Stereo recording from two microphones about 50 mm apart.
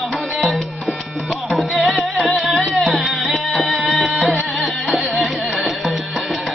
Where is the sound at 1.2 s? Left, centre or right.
Centre.